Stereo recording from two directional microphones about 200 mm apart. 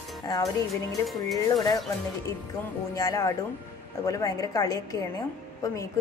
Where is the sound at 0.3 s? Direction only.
20° left (ahead or behind).